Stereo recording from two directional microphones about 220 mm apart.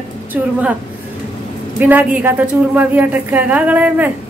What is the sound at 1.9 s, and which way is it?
A woman's voice, 5° right (ahead or behind).